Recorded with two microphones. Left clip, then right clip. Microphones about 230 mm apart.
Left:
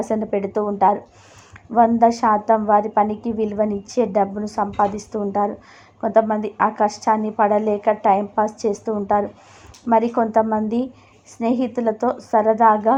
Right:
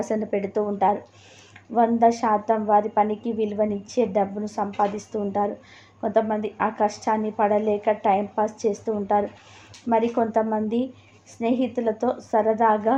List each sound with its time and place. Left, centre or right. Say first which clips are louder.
0.0 s a woman's voice: left 3 dB; centre